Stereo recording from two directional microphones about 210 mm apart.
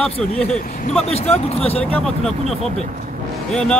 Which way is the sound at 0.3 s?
30° left (ahead or behind).